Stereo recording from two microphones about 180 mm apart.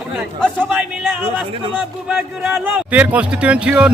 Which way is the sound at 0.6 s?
5° right (ahead or behind).